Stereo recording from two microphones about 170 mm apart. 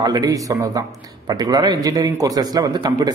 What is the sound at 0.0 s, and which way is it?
A man's voice, 20° right (ahead or behind).